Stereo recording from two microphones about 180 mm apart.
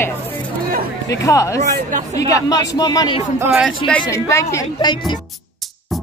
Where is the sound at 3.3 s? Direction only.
10° right (ahead or behind).